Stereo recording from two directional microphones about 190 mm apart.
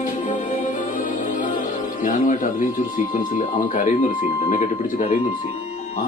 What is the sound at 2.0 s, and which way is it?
Speech, 45° left (ahead or behind).